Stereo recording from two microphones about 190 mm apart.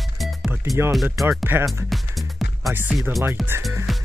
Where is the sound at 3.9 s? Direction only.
Centre (ahead or behind).